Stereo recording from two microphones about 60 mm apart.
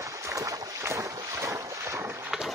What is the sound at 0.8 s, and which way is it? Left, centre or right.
Boat, right.